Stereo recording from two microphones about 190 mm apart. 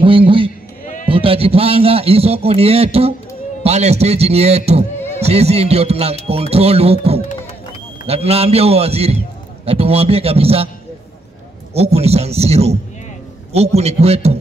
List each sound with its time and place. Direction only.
0.0 s a sound: 25° right (ahead or behind)
1.0 s a man's voice: 30° right (ahead or behind)
11.7 s a man's voice: 35° right (ahead or behind)